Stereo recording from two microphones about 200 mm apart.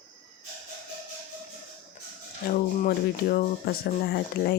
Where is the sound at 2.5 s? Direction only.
45° left (ahead or behind).